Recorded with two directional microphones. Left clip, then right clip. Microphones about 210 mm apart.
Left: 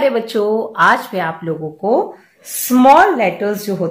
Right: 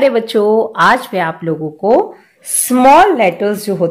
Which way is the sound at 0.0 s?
40° right (ahead or behind).